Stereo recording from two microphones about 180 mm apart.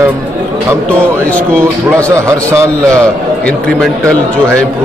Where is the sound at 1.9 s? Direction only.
15° right (ahead or behind).